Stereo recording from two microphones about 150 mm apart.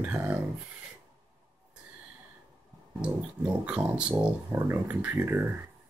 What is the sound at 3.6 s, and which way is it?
Speech, 5° right (ahead or behind).